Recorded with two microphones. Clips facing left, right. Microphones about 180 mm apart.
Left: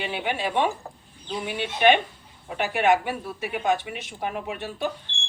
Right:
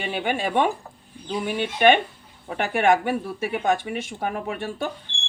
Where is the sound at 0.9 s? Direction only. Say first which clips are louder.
Left 3 dB; 35° left (ahead or behind).